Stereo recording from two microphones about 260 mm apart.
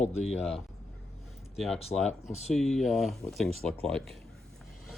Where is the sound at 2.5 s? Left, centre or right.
Centre.